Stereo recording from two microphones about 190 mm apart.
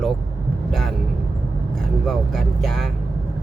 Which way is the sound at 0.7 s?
Centre (ahead or behind).